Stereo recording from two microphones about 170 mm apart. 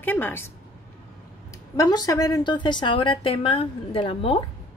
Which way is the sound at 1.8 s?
20° left (ahead or behind).